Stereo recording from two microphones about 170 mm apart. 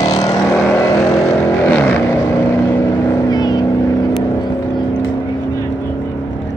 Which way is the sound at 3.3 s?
25° left (ahead or behind).